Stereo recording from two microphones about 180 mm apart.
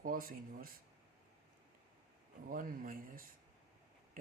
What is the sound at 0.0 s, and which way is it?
Speech, 50° right (ahead or behind).